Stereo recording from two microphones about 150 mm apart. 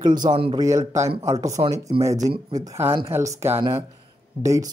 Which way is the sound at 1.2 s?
20° right (ahead or behind).